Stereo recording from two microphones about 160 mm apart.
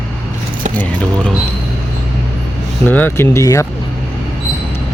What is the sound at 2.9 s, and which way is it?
Speech, 10° left (ahead or behind).